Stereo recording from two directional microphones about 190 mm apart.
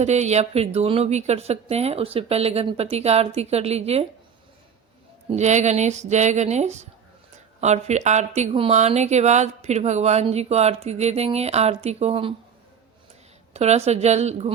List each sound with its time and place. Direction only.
0.0 s a woman's voice: 35° right (ahead or behind)
5.4 s a woman's voice: 35° right (ahead or behind)
13.5 s a woman's voice: 35° right (ahead or behind)